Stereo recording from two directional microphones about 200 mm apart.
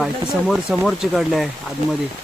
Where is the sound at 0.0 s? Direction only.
Centre (ahead or behind).